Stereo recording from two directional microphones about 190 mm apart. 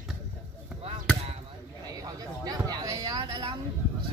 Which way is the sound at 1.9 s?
20° right (ahead or behind).